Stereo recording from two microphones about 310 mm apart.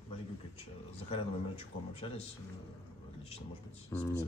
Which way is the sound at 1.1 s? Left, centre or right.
Centre.